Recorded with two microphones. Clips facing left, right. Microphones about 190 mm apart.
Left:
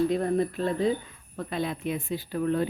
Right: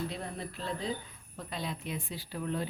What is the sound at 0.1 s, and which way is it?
Speech, 50° left (ahead or behind).